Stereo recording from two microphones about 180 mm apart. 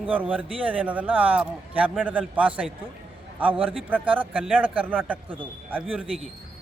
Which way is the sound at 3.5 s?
30° right (ahead or behind).